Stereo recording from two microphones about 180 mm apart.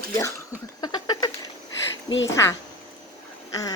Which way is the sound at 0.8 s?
20° left (ahead or behind).